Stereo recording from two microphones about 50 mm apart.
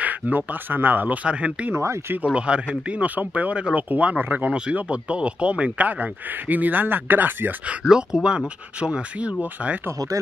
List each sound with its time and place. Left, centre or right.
0.0 s a man's voice: right
1.8 s speech: right
2.2 s a man's voice: right
7.8 s speech: centre